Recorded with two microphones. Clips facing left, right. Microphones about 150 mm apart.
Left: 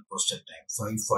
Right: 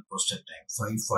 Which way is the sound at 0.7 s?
20° left (ahead or behind).